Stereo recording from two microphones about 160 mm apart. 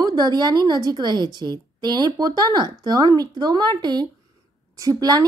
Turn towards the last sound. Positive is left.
turn(degrees=-25)  # may be behind; listen again after turning